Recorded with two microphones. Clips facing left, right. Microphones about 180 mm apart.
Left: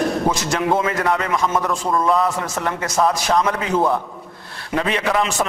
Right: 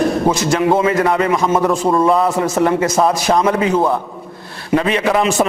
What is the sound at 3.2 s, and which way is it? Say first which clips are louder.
Speech: right 5 dB; 10° right (ahead or behind).